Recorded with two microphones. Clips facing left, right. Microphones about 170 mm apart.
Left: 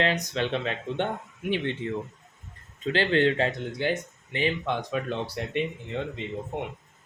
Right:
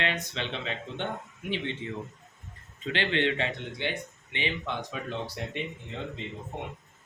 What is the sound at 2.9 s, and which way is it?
A man's voice, 40° left (ahead or behind).